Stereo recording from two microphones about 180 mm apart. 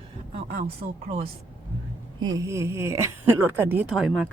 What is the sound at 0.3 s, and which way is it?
Speech, 35° right (ahead or behind).